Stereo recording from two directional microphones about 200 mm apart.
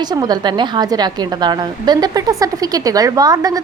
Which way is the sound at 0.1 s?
20° right (ahead or behind).